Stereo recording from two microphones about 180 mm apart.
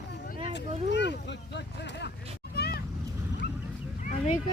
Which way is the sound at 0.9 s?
75° left (ahead or behind).